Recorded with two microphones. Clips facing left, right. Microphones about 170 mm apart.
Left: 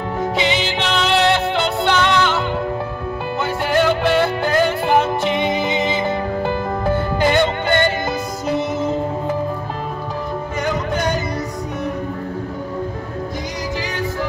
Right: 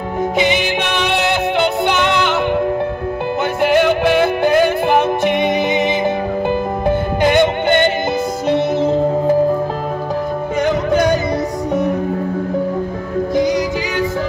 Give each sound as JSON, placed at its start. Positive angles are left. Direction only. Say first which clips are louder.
{"t": 0.4, "sound": "music", "louder": "right 5 dB", "side_deg": -15}
{"t": 3.6, "sound": "music", "louder": "right 4 dB", "side_deg": -15}
{"t": 8.5, "sound": "music", "louder": "right 5 dB", "side_deg": -30}